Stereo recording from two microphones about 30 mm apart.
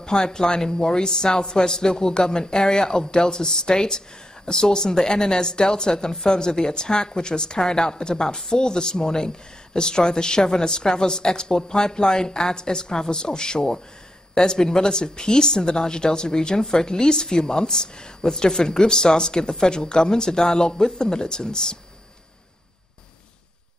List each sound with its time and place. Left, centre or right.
0.0 s a woman's voice: left